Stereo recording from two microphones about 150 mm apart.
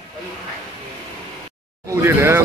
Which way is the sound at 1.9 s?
20° right (ahead or behind).